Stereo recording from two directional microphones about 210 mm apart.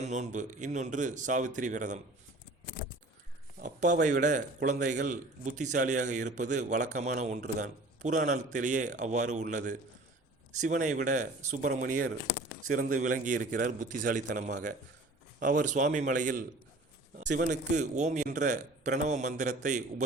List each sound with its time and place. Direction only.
0.0 s a man's voice: 35° right (ahead or behind)
3.6 s a sound: 35° right (ahead or behind)
4.0 s a man's voice: 35° right (ahead or behind)
17.5 s a man's voice: 35° right (ahead or behind)